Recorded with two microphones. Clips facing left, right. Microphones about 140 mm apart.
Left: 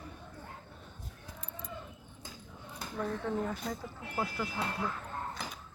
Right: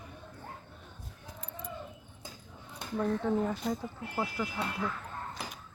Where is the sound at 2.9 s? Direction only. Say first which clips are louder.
Right 5 dB; 5° right (ahead or behind).